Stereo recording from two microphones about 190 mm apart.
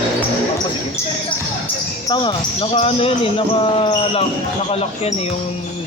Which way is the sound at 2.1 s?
25° left (ahead or behind).